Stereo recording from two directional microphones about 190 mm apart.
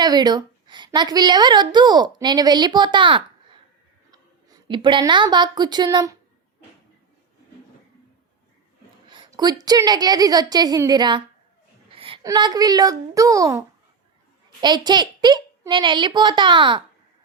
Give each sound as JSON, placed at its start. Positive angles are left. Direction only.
{"t": 0.0, "sound": "a woman's voice", "side_deg": -20}
{"t": 9.0, "sound": "a child's voice", "side_deg": -25}
{"t": 11.9, "sound": "a sound", "side_deg": -30}
{"t": 12.2, "sound": "a child's voice", "side_deg": -20}